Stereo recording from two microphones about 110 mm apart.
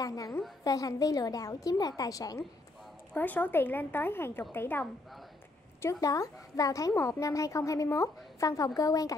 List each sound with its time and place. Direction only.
0.0 s a woman's voice: 30° left (ahead or behind)
3.2 s a woman's voice: 15° left (ahead or behind)
5.8 s a woman's voice: 30° left (ahead or behind)